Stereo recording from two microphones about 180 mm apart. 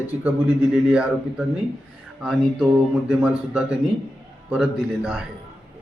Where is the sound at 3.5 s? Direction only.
5° right (ahead or behind).